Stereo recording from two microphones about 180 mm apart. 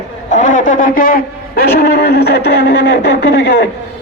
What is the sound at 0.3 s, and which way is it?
A man's voice, 45° left (ahead or behind).